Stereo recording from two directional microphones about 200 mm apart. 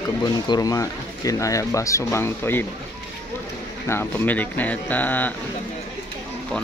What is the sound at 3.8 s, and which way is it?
Speech, 10° left (ahead or behind).